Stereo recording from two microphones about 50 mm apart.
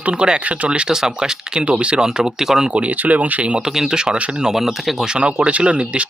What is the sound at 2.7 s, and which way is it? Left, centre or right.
Speech, right.